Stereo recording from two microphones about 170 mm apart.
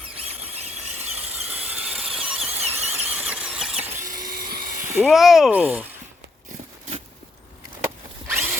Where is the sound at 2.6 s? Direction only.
40° right (ahead or behind).